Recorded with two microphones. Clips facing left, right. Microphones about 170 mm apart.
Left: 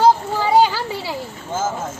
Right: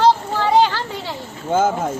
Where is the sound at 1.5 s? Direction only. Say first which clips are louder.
Right 7 dB; 65° right (ahead or behind).